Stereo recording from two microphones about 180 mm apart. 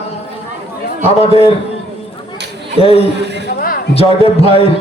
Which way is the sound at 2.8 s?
35° left (ahead or behind).